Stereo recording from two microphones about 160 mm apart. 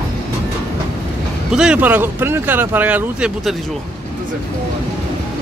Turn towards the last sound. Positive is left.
turn(degrees=-10)  # may be behind; listen again after turning